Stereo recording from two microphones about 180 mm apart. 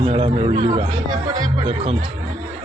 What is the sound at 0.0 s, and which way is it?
A man's voice, 30° right (ahead or behind).